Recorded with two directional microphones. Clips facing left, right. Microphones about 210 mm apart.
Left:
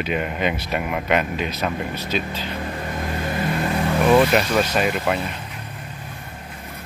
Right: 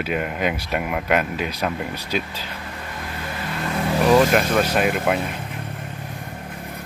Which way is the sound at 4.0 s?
40° right (ahead or behind).